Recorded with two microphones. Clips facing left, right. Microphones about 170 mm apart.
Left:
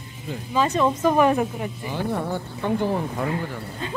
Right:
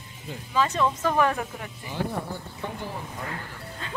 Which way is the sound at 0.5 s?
15° left (ahead or behind).